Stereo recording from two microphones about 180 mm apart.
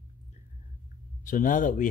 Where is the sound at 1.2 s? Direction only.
45° left (ahead or behind).